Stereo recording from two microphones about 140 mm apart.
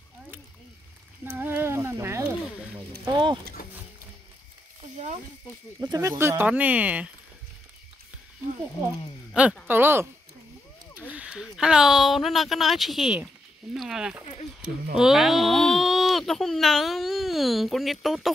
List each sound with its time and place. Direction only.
1.3 s a sound: 15° right (ahead or behind)
4.9 s speech: 50° right (ahead or behind)
5.8 s speech: 25° right (ahead or behind)
9.3 s a woman's voice: 10° right (ahead or behind)
11.0 s a sound: 10° right (ahead or behind)
11.4 s speech: 5° right (ahead or behind)